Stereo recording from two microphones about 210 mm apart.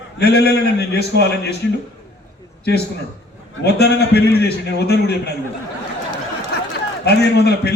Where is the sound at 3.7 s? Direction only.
50° left (ahead or behind).